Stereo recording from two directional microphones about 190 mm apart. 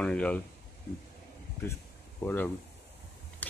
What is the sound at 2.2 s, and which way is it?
Speech, 10° left (ahead or behind).